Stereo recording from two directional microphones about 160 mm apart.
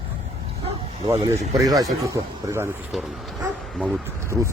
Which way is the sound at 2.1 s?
20° right (ahead or behind).